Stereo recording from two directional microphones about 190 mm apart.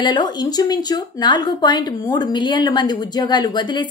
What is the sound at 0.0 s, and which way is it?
A woman's voice, 20° left (ahead or behind).